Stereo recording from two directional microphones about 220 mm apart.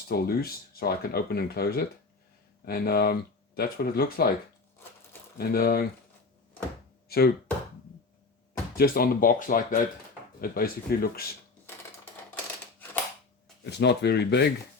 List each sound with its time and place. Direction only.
0.1 s speech: 45° left (ahead or behind)
5.4 s speech: 45° left (ahead or behind)
7.1 s speech: 45° left (ahead or behind)
8.7 s speech: 40° left (ahead or behind)
13.7 s speech: 50° left (ahead or behind)